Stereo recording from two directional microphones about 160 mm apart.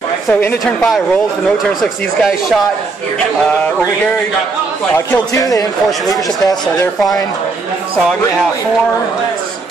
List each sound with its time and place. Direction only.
0.3 s speech: 10° left (ahead or behind)
1.8 s speech: centre (ahead or behind)
5.1 s a man's voice: 20° left (ahead or behind)
5.9 s speech: centre (ahead or behind)